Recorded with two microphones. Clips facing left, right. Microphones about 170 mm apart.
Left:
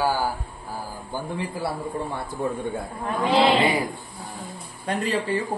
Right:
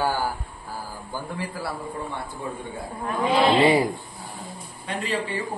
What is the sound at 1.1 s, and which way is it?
Speech, 20° left (ahead or behind).